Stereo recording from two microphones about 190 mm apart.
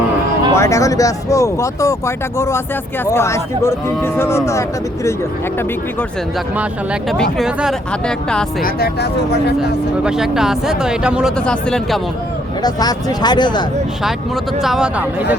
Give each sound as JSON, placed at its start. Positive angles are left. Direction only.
{"t": 0.5, "sound": "speech", "side_deg": 15}
{"t": 7.1, "sound": "speech", "side_deg": 0}
{"t": 8.6, "sound": "speech", "side_deg": 60}
{"t": 10.0, "sound": "speech", "side_deg": -5}
{"t": 12.6, "sound": "speech", "side_deg": 20}
{"t": 14.6, "sound": "speech", "side_deg": -5}